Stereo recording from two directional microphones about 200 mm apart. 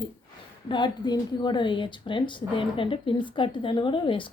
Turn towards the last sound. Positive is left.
turn(degrees=25)  # may be behind; listen again after turning